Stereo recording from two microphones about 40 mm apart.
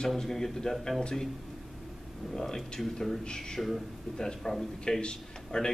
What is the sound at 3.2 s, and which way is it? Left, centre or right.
A man's voice, centre.